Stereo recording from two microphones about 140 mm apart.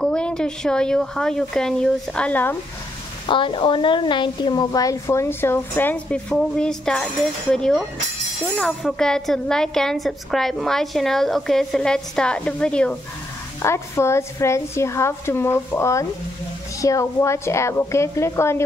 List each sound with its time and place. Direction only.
0.0 s a woman's voice: 5° left (ahead or behind)
3.3 s a woman's voice: 35° left (ahead or behind); by 12.9 s 5° left (ahead or behind)
13.6 s a woman's voice: 20° left (ahead or behind)